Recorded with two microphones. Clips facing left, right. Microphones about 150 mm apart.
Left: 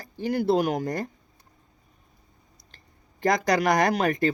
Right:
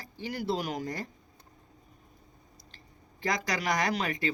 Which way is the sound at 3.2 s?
50° left (ahead or behind).